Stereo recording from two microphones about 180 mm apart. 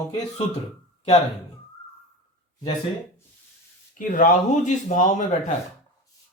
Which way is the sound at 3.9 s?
50° left (ahead or behind).